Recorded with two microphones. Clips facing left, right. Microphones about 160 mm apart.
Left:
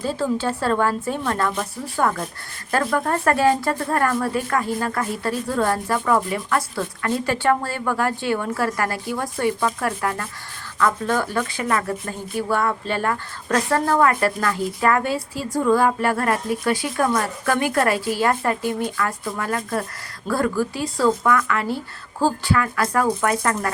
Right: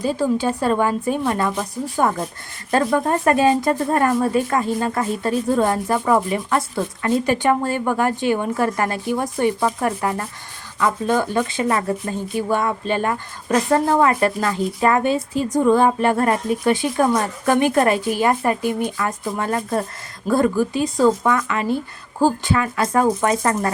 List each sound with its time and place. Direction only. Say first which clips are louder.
0.0 s speech: right 3 dB; 15° right (ahead or behind)